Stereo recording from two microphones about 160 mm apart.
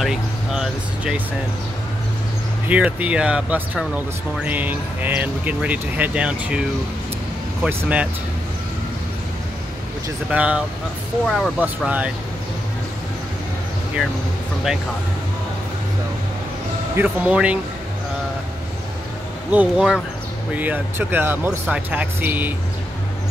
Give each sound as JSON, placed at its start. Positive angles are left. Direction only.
{"t": 0.0, "sound": "speech", "side_deg": 0}
{"t": 2.7, "sound": "speech", "side_deg": -10}
{"t": 7.6, "sound": "speech", "side_deg": -10}
{"t": 10.3, "sound": "speech", "side_deg": -10}
{"t": 11.2, "sound": "speech", "side_deg": 0}
{"t": 11.6, "sound": "speech", "side_deg": -10}
{"t": 16.9, "sound": "speech", "side_deg": -10}
{"t": 19.5, "sound": "speech", "side_deg": -5}